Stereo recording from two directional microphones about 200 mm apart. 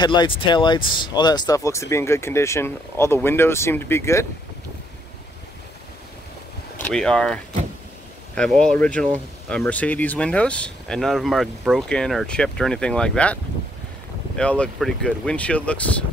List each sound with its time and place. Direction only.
0.0 s speech: 20° left (ahead or behind)
6.8 s speech: 5° left (ahead or behind)
8.4 s speech: 5° left (ahead or behind)